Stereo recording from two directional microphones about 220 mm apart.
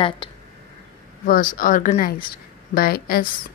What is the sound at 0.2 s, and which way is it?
Speech, 25° left (ahead or behind).